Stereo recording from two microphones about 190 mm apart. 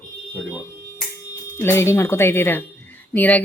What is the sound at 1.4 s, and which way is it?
Speech, 15° left (ahead or behind).